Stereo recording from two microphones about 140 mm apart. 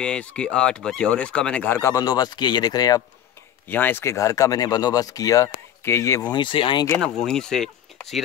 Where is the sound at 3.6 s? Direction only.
15° left (ahead or behind); by 6.9 s 35° left (ahead or behind).